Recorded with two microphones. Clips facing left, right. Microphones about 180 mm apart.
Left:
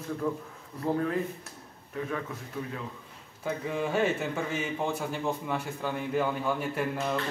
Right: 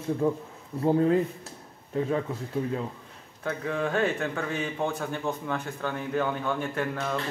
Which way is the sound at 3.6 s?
5° left (ahead or behind).